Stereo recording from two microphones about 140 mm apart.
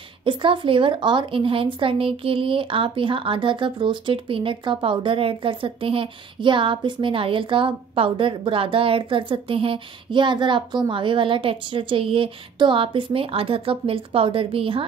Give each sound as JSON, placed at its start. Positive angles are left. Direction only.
{"t": 0.2, "sound": "a woman's voice", "side_deg": -35}